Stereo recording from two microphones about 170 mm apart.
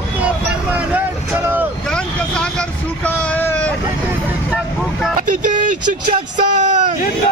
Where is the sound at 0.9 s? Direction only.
10° right (ahead or behind).